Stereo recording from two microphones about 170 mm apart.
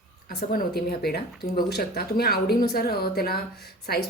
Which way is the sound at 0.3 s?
70° left (ahead or behind).